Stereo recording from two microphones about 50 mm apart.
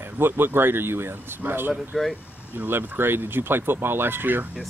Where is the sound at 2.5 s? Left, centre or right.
Right.